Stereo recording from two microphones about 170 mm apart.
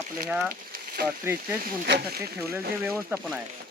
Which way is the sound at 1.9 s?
65° right (ahead or behind).